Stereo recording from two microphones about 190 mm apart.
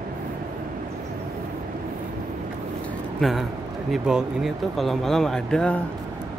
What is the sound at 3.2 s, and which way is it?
Speech, centre (ahead or behind).